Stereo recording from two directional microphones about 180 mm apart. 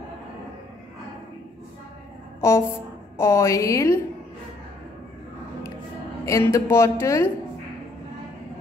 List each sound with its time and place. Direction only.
2.4 s speech: 15° left (ahead or behind)
6.2 s speech: 15° left (ahead or behind)